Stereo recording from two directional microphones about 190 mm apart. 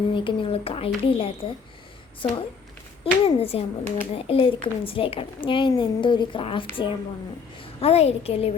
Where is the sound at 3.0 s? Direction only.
30° left (ahead or behind).